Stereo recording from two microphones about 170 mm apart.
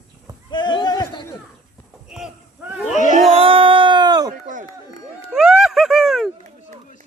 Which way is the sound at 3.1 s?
40° right (ahead or behind).